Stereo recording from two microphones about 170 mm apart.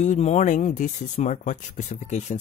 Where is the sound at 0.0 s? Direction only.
40° left (ahead or behind).